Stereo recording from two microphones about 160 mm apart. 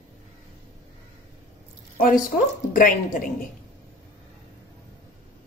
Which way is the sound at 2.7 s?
55° left (ahead or behind).